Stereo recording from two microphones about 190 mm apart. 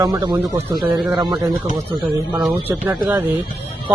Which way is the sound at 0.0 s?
20° right (ahead or behind).